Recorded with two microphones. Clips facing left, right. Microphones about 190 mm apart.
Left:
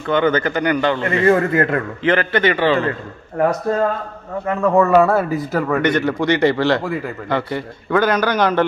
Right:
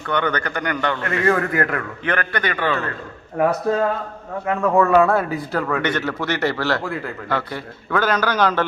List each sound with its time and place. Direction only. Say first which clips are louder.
0.0 s a man's voice: left 6 dB; 20° left (ahead or behind)
4.5 s a man's voice: left 2 dB; centre (ahead or behind)